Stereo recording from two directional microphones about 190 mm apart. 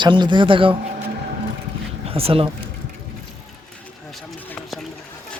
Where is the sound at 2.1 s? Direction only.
30° right (ahead or behind).